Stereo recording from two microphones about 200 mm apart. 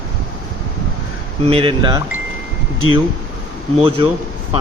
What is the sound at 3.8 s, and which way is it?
Speech, 25° right (ahead or behind).